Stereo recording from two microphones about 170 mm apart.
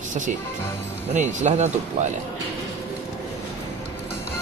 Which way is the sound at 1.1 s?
45° right (ahead or behind).